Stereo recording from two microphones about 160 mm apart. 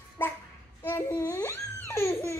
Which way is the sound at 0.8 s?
15° left (ahead or behind).